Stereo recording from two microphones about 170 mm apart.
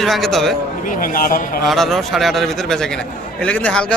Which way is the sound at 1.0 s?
55° left (ahead or behind).